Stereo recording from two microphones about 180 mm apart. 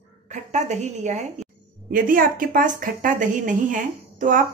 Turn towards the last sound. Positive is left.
turn(degrees=-45)  # may be behind; listen again after turning